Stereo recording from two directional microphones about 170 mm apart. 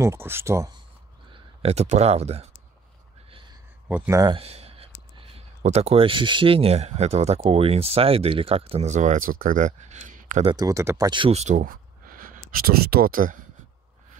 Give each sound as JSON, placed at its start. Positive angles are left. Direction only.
{"t": 0.0, "sound": "speech", "side_deg": -15}
{"t": 1.3, "sound": "speech", "side_deg": -35}
{"t": 3.3, "sound": "a sound", "side_deg": -30}
{"t": 3.9, "sound": "speech", "side_deg": -10}
{"t": 4.2, "sound": "speech", "side_deg": -30}
{"t": 10.5, "sound": "speech", "side_deg": -20}